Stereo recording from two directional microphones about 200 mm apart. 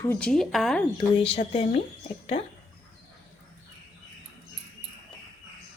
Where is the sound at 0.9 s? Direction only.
30° left (ahead or behind).